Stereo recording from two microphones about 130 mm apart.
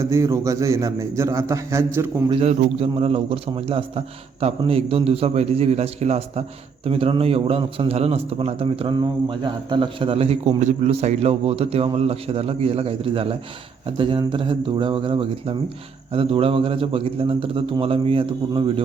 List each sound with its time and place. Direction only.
0.0 s a man's voice: 25° right (ahead or behind)
2.3 s a man's voice: 55° right (ahead or behind)